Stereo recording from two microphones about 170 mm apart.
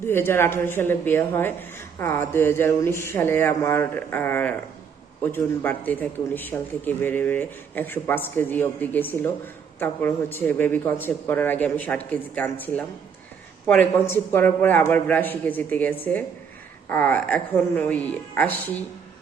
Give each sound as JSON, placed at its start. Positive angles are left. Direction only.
{"t": 0.0, "sound": "a man's voice", "side_deg": 15}